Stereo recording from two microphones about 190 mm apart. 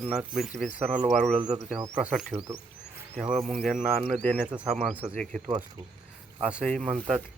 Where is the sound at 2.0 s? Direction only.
5° right (ahead or behind).